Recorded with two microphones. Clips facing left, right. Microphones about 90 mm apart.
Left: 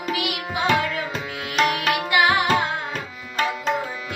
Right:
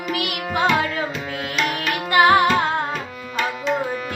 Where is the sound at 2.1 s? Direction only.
45° right (ahead or behind).